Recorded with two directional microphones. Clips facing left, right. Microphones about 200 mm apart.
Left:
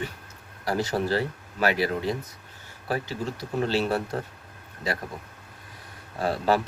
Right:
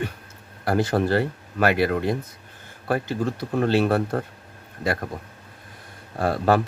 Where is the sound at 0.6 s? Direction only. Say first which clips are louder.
Right 5 dB; 55° right (ahead or behind).